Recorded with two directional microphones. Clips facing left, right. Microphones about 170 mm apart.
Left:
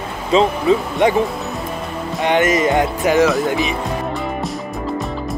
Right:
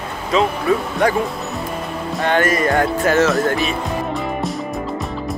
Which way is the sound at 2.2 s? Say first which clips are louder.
Left 2 dB; 20° left (ahead or behind).